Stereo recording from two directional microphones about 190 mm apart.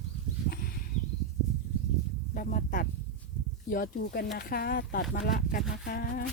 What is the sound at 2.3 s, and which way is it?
Speech, 50° left (ahead or behind).